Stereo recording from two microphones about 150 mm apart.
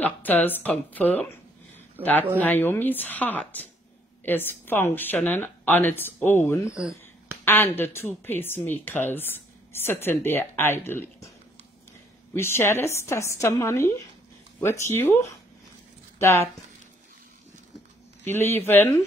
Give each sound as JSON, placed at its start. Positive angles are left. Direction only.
{"t": 0.0, "sound": "a woman's voice", "side_deg": 10}
{"t": 2.0, "sound": "speech", "side_deg": -10}
{"t": 2.4, "sound": "a woman's voice", "side_deg": 15}
{"t": 6.7, "sound": "speech", "side_deg": -5}
{"t": 7.4, "sound": "a woman's voice", "side_deg": 15}
{"t": 12.4, "sound": "a woman's voice", "side_deg": 15}
{"t": 16.2, "sound": "speech", "side_deg": 20}
{"t": 18.2, "sound": "a woman's voice", "side_deg": 15}